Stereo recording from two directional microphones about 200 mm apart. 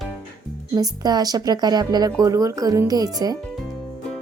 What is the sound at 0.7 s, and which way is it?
A woman's voice, 20° right (ahead or behind).